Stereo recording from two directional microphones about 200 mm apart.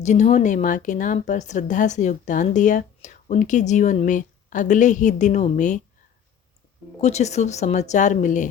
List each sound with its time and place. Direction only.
0.0 s a woman's voice: 35° left (ahead or behind)
7.0 s a woman's voice: 35° left (ahead or behind)